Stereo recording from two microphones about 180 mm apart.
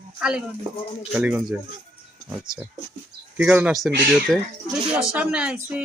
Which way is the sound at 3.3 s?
10° right (ahead or behind).